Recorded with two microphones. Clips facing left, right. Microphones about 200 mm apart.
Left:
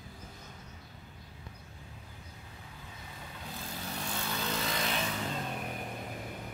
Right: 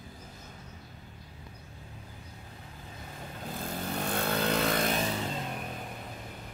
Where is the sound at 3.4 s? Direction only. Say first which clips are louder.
Right 7 dB; 50° right (ahead or behind).